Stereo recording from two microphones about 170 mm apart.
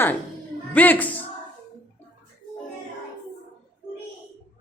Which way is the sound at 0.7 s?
10° left (ahead or behind).